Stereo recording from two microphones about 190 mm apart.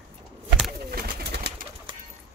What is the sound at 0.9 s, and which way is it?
Bird, 55° right (ahead or behind).